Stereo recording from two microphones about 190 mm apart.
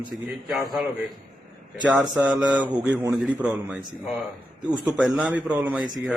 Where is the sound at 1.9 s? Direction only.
20° right (ahead or behind).